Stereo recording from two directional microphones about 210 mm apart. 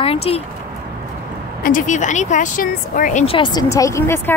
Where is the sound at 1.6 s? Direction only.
40° left (ahead or behind).